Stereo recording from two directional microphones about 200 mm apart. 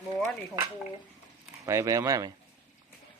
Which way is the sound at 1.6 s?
15° right (ahead or behind).